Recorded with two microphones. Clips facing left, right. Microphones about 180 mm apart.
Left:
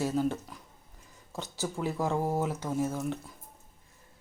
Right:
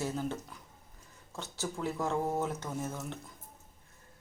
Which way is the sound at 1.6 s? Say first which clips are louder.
Left 3 dB; 10° left (ahead or behind).